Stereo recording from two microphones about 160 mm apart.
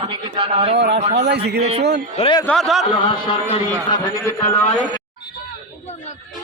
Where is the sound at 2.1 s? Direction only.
35° left (ahead or behind).